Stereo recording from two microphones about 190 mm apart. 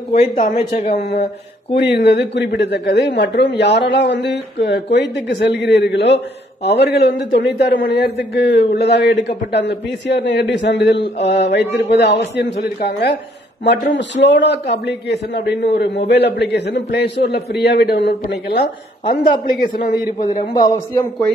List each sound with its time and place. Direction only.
0.4 s a man's voice: 40° left (ahead or behind); by 13.2 s 55° left (ahead or behind)
13.9 s a man's voice: 70° left (ahead or behind); by 20.0 s 50° left (ahead or behind)
20.5 s a man's voice: 20° left (ahead or behind)